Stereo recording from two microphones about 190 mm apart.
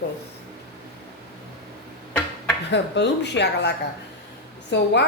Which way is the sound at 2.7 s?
65° left (ahead or behind).